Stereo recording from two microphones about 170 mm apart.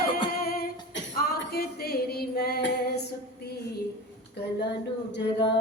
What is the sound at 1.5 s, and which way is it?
Female singing, 65° left (ahead or behind).